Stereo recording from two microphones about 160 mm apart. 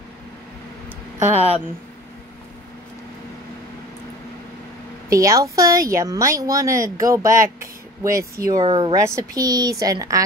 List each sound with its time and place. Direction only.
1.3 s speech: 40° right (ahead or behind)
5.1 s speech: 20° right (ahead or behind)